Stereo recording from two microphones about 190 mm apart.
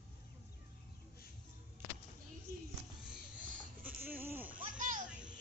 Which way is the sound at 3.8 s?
10° right (ahead or behind).